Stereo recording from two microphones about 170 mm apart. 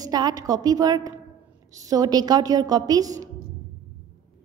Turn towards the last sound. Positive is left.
turn(degrees=-20)  # may be behind; listen again after turning